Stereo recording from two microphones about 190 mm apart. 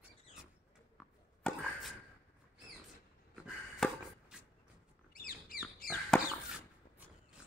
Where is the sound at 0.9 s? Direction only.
Centre (ahead or behind).